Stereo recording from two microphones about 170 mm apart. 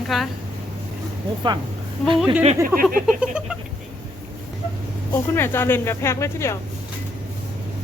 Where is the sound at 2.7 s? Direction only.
15° right (ahead or behind).